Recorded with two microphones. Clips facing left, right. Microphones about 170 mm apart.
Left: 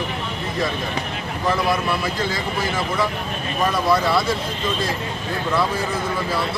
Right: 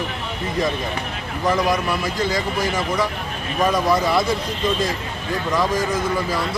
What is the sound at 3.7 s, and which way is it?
Speech, 15° right (ahead or behind).